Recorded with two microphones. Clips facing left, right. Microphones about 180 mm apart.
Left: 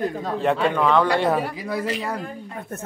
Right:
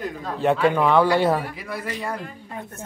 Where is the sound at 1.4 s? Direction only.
85° left.